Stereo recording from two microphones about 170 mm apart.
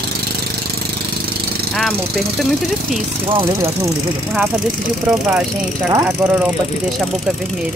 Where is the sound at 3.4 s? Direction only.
15° right (ahead or behind).